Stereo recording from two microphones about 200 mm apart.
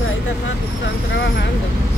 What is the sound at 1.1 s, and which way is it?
Speech, 60° left (ahead or behind).